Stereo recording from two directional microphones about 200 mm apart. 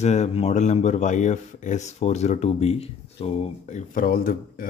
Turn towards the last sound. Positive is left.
turn(degrees=45)  # may be behind; listen again after turning